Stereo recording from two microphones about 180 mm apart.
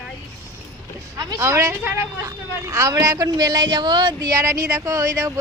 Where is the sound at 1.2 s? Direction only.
15° right (ahead or behind).